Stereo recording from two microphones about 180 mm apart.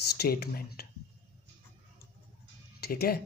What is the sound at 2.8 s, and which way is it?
Speech, 60° left (ahead or behind).